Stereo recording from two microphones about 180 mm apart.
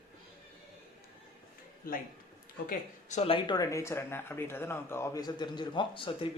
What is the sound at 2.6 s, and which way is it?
Speech, 40° left (ahead or behind).